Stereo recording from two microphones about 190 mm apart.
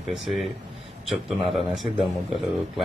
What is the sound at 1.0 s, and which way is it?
Speech, centre (ahead or behind).